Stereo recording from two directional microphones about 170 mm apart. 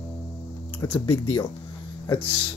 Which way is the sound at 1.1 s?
30° left (ahead or behind).